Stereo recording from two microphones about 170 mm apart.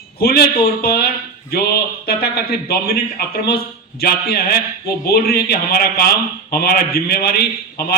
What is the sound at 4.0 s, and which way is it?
A man's voice, 65° left (ahead or behind).